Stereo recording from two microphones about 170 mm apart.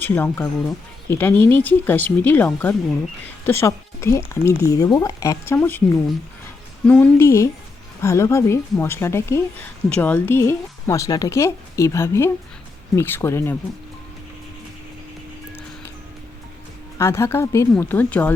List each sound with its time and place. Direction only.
0.0 s a woman's voice: 10° left (ahead or behind)
6.8 s a woman's voice: 10° left (ahead or behind)
17.0 s a woman's voice: 15° left (ahead or behind)